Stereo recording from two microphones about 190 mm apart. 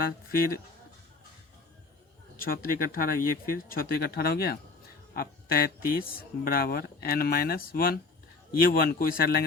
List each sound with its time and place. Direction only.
0.3 s speech: 50° left (ahead or behind)
2.3 s speech: 50° left (ahead or behind)